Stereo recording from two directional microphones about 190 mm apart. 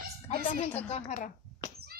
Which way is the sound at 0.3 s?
35° left (ahead or behind).